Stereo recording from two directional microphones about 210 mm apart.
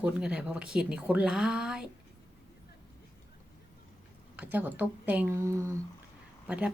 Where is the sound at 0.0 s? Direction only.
5° right (ahead or behind).